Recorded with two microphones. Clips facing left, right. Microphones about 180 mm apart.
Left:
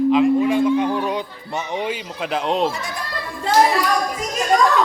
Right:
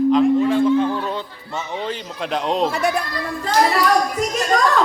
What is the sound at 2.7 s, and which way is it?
Speech, 65° right (ahead or behind).